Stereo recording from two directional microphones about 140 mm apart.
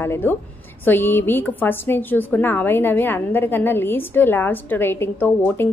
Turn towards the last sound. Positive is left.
turn(degrees=15)  # may be behind; listen again after turning